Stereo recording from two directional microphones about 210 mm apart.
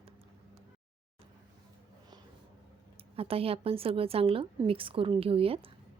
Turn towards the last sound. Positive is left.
turn(degrees=-25)  # may be behind; listen again after turning